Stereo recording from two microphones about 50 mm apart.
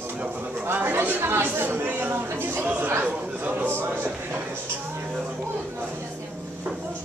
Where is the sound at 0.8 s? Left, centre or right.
Right.